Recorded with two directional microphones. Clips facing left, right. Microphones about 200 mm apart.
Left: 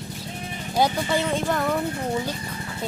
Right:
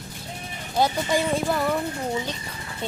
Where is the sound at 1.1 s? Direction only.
10° right (ahead or behind).